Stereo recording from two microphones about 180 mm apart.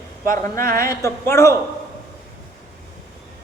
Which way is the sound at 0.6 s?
55° right (ahead or behind).